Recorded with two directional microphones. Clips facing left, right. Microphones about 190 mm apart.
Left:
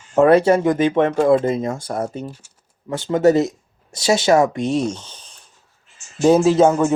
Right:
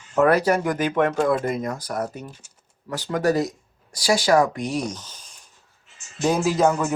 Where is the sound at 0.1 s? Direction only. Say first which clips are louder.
Left 5 dB; 25° left (ahead or behind).